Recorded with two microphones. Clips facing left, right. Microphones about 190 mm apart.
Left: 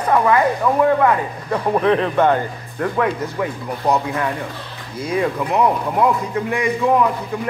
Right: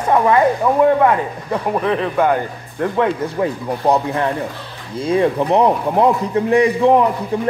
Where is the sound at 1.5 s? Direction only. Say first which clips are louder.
Left 2 dB; 5° right (ahead or behind).